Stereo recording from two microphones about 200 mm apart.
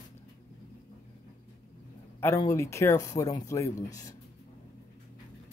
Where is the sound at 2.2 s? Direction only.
15° left (ahead or behind).